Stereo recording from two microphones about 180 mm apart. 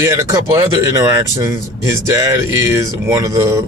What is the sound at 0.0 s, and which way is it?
Speech, 15° right (ahead or behind).